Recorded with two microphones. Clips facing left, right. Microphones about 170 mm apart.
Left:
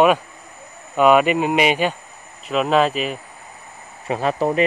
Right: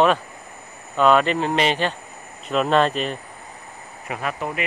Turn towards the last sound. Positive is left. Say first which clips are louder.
# left 8 dB
turn(degrees=30)  # may be behind; listen again after turning